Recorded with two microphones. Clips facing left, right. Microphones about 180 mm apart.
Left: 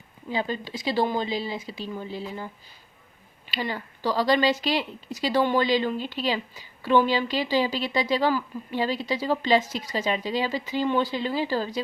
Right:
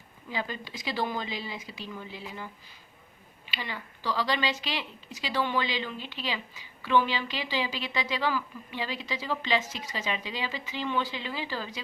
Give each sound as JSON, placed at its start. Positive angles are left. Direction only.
{"t": 0.3, "sound": "a woman's voice", "side_deg": 30}
{"t": 3.5, "sound": "a woman's voice", "side_deg": 40}